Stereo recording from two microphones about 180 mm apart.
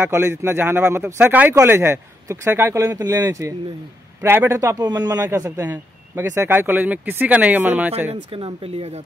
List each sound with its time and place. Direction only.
0.0 s a man's voice: 15° right (ahead or behind)
8.1 s speech: 30° right (ahead or behind)